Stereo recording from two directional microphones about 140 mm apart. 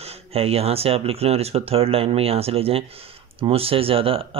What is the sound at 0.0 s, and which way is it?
Speech, 45° right (ahead or behind).